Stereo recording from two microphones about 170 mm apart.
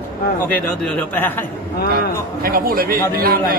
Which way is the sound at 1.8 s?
60° right (ahead or behind).